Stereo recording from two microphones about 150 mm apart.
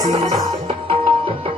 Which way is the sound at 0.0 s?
25° right (ahead or behind).